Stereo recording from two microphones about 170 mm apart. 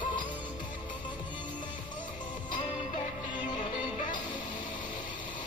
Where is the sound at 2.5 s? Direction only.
30° left (ahead or behind).